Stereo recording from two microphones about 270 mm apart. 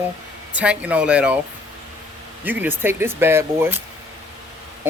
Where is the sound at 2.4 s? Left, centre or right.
Centre.